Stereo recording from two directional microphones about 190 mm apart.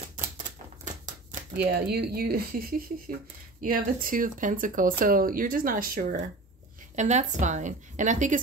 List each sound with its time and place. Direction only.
1.6 s a woman's voice: 55° right (ahead or behind)